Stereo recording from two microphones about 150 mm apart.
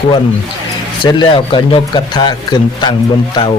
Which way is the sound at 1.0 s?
30° left (ahead or behind).